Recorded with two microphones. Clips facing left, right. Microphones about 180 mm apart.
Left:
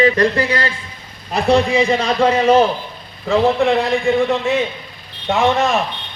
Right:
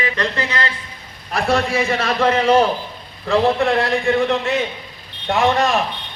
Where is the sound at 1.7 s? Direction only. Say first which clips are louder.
Left 4 dB; 15° left (ahead or behind); by 5.8 s centre (ahead or behind).